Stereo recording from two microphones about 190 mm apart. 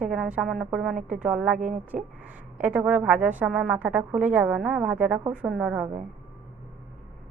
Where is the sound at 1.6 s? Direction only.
40° right (ahead or behind).